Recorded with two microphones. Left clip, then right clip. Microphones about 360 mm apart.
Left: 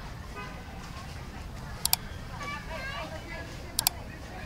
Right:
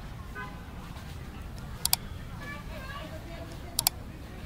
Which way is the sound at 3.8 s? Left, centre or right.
Centre.